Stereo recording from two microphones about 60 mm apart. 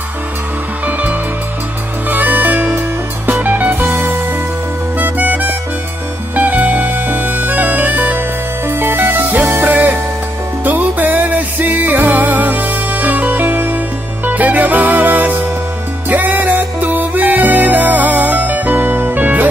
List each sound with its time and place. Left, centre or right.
0.8 s music: right
3.8 s music: right
4.9 s music: right
8.6 s music: right
9.7 s music: right